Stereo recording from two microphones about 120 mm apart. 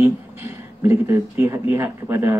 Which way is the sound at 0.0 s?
25° right (ahead or behind).